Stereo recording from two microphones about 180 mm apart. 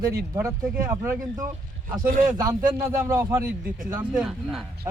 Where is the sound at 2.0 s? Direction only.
50° right (ahead or behind).